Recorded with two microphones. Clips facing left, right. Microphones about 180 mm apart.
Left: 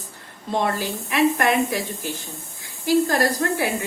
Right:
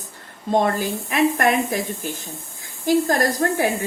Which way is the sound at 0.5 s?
45° right (ahead or behind).